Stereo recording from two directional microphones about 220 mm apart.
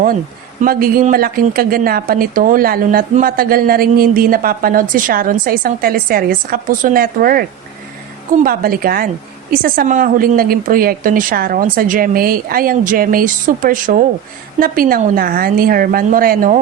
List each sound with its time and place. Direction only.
0.6 s a woman's voice: 40° right (ahead or behind)
8.4 s a woman's voice: 40° right (ahead or behind)